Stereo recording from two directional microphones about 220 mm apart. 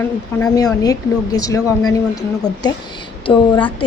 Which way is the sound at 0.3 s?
15° left (ahead or behind).